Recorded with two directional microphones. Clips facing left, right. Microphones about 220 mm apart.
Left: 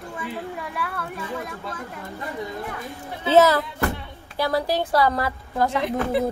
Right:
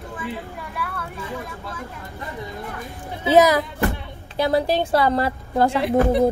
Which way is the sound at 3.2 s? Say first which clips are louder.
Right 1 dB; 15° right (ahead or behind).